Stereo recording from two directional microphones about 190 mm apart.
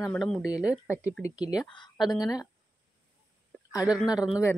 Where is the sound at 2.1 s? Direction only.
20° left (ahead or behind).